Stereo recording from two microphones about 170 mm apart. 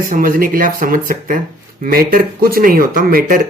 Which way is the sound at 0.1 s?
55° right (ahead or behind).